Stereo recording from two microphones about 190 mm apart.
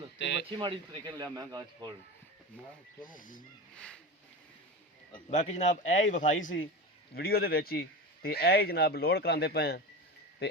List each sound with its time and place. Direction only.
0.2 s a sound: 65° left (ahead or behind)
0.5 s speech: 25° right (ahead or behind)
3.1 s speech: 45° left (ahead or behind)
5.3 s a man's voice: 40° left (ahead or behind)
7.1 s speech: 55° left (ahead or behind)